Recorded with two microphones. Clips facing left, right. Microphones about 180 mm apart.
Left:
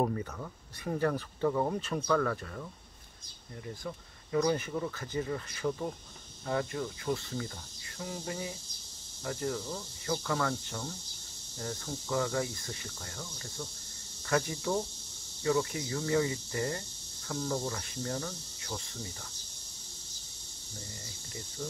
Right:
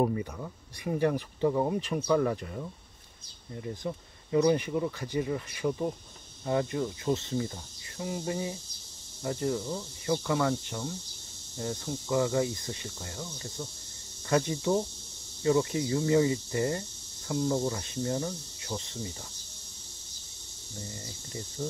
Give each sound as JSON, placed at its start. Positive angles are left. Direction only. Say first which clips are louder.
{"t": 0.0, "sound": "speech", "louder": "right 3 dB", "side_deg": -10}
{"t": 21.0, "sound": "speech", "louder": "right 5 dB", "side_deg": -30}